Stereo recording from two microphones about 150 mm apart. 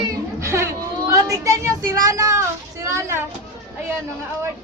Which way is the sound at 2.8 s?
20° right (ahead or behind).